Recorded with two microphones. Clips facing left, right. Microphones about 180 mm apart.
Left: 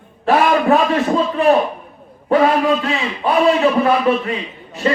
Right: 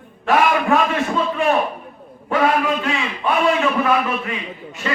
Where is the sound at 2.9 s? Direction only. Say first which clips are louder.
Left 3 dB; 35° left (ahead or behind).